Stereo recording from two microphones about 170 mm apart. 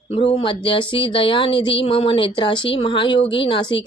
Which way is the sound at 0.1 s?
35° left (ahead or behind).